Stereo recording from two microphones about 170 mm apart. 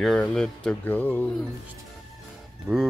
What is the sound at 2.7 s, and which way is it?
Speech, 10° right (ahead or behind).